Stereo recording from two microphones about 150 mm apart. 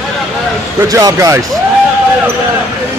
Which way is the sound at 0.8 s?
25° right (ahead or behind).